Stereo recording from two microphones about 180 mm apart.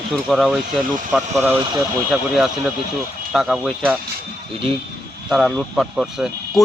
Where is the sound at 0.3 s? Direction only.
5° right (ahead or behind).